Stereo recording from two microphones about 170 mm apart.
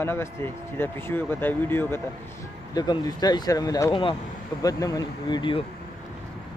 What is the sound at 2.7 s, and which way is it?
Speech, 25° left (ahead or behind).